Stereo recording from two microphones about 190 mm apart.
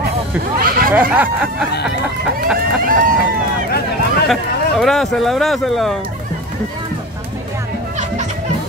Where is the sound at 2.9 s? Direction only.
45° right (ahead or behind).